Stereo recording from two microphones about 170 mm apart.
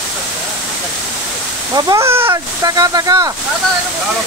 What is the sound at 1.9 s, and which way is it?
Speech, 15° right (ahead or behind).